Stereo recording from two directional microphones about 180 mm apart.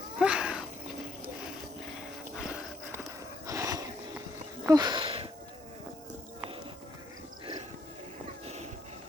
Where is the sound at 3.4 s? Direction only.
15° right (ahead or behind).